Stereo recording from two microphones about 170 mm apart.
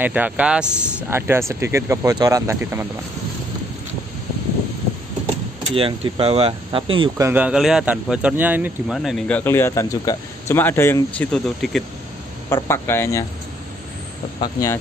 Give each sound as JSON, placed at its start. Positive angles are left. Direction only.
{"t": 0.0, "sound": "speech", "side_deg": -10}
{"t": 5.8, "sound": "speech", "side_deg": -30}
{"t": 7.2, "sound": "speech", "side_deg": -15}
{"t": 8.9, "sound": "speech", "side_deg": 0}
{"t": 9.4, "sound": "speech", "side_deg": 15}
{"t": 12.6, "sound": "speech", "side_deg": 15}
{"t": 14.4, "sound": "speech", "side_deg": 20}